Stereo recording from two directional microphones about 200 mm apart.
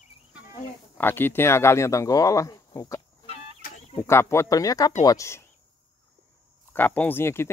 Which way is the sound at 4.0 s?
10° left (ahead or behind).